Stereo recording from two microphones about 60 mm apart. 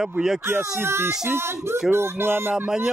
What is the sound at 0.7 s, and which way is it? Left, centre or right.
Speech, right.